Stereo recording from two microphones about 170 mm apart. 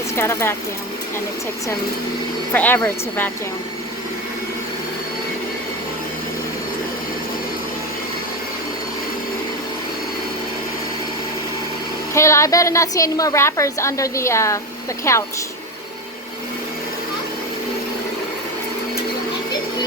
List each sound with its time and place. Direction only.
0.2 s a woman's voice: 15° left (ahead or behind)
2.5 s a woman's voice: 10° left (ahead or behind)
12.1 s a woman's voice: 15° left (ahead or behind)